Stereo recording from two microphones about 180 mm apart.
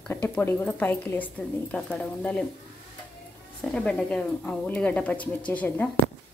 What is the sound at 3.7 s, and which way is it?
A woman's voice, 5° left (ahead or behind).